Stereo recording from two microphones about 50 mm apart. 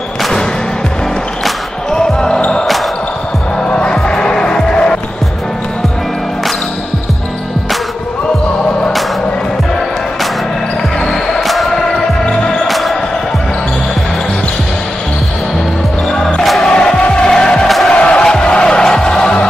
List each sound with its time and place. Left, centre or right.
1.9 s basketball bounce: centre
3.5 s music: centre
11.1 s basketball bounce: centre
12.3 s basketball bounce: centre
12.6 s music: centre
16.6 s music: centre